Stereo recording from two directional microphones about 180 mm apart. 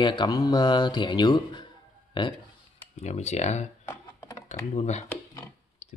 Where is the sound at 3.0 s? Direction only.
35° left (ahead or behind).